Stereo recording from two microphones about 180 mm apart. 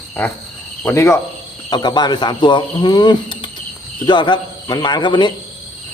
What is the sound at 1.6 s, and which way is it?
Speech, 25° left (ahead or behind).